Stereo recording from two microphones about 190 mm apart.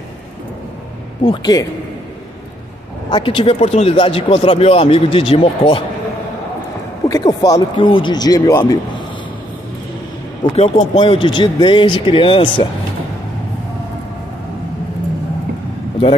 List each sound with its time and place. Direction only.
1.2 s speech: 20° left (ahead or behind)
3.1 s speech: 25° left (ahead or behind)
7.1 s speech: 15° left (ahead or behind)
10.4 s speech: 30° left (ahead or behind)